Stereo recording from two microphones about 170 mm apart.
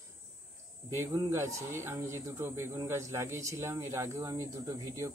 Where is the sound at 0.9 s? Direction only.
15° right (ahead or behind).